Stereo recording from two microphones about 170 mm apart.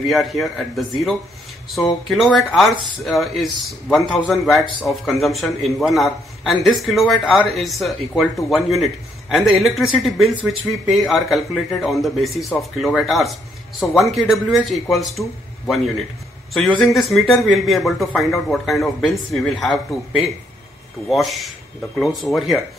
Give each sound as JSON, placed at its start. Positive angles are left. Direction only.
{"t": 0.0, "sound": "a man's voice", "side_deg": 0}